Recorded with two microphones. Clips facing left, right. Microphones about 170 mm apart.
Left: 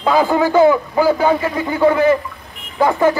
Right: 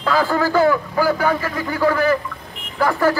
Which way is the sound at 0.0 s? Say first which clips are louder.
Left 4 dB; 20° left (ahead or behind).